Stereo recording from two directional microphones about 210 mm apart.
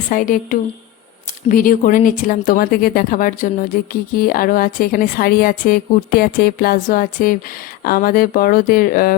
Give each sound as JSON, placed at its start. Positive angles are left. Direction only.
{"t": 0.1, "sound": "a woman's voice", "side_deg": 40}